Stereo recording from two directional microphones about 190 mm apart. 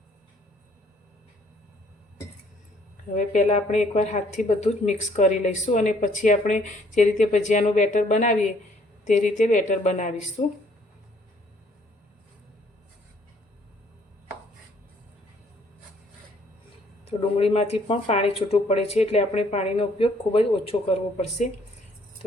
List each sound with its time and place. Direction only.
3.2 s speech: 40° left (ahead or behind)
17.1 s speech: 30° left (ahead or behind)